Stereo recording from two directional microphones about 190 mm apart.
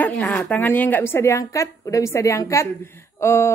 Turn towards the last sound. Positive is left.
turn(degrees=15)  # may be behind; listen again after turning